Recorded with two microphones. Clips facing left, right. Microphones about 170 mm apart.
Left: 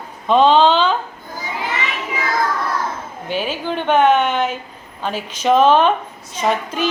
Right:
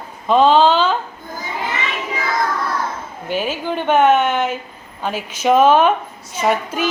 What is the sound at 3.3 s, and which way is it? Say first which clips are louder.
Speech: right 1 dB; 45° right (ahead or behind).